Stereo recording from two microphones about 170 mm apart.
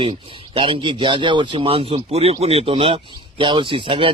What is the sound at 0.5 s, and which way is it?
Speech, 30° right (ahead or behind).